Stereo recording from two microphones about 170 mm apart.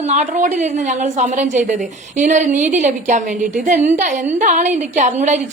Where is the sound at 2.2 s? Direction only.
45° right (ahead or behind).